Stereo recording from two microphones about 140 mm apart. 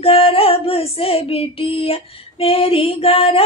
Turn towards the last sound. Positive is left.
turn(degrees=40)  # may be behind; listen again after turning